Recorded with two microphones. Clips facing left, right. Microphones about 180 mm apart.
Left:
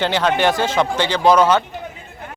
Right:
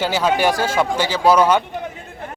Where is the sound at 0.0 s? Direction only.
10° right (ahead or behind).